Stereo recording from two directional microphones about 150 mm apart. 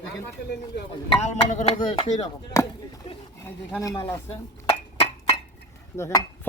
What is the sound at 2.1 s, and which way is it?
Chop, 20° left (ahead or behind).